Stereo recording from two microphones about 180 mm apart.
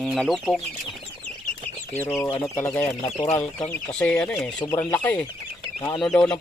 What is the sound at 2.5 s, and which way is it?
Speech, 10° left (ahead or behind).